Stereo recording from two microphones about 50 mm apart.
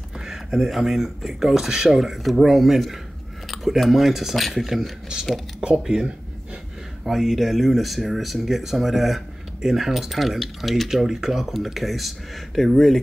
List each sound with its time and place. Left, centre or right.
0.2 s speech: centre
5.6 s speech: centre
7.1 s speech: centre